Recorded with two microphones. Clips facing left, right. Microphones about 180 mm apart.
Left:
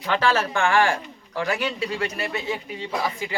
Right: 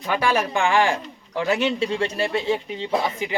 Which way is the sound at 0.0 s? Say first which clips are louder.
Even; 10° right (ahead or behind).